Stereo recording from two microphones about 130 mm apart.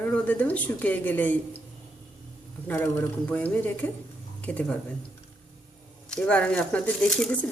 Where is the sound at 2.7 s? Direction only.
15° left (ahead or behind).